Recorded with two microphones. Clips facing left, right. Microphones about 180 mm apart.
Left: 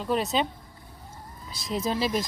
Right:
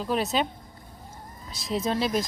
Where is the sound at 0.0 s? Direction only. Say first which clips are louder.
Even; centre (ahead or behind).